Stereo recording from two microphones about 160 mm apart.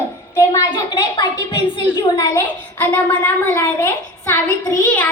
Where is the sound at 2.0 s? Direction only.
20° left (ahead or behind).